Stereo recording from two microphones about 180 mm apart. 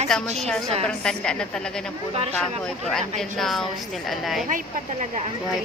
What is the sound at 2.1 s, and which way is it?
Speech, 35° right (ahead or behind).